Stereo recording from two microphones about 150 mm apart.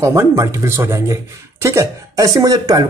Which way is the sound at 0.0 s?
20° right (ahead or behind).